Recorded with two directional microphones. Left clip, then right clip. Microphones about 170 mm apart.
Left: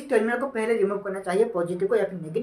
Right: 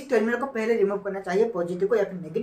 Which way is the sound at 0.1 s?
25° left (ahead or behind).